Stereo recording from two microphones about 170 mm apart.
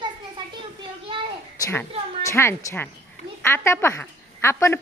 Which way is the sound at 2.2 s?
15° left (ahead or behind).